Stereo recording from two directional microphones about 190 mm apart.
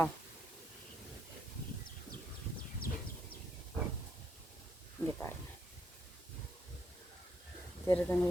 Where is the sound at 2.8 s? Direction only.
50° left (ahead or behind).